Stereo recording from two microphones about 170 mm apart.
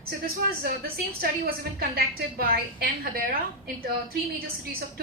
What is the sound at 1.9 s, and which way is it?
A woman's voice, 60° right (ahead or behind).